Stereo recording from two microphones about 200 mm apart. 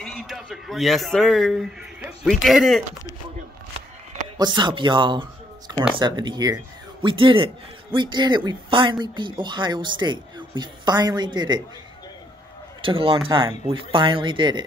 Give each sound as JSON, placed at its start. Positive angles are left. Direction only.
{"t": 0.0, "sound": "speech", "side_deg": 0}
{"t": 4.4, "sound": "speech", "side_deg": -20}
{"t": 12.8, "sound": "speech", "side_deg": -25}